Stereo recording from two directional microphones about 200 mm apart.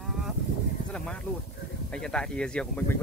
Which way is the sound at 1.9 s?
5° left (ahead or behind).